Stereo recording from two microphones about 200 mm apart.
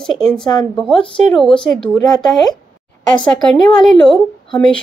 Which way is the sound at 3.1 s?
5° left (ahead or behind).